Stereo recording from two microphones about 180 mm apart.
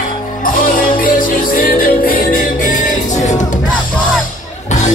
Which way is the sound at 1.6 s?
55° left (ahead or behind).